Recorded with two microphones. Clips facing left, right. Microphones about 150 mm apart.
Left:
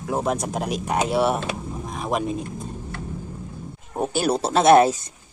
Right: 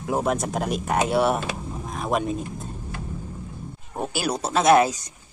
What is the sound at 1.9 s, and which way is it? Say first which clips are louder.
Vehicle: even; centre (ahead or behind).